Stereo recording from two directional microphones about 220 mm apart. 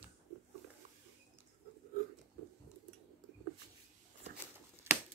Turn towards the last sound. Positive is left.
turn(degrees=-10)  # may be behind; listen again after turning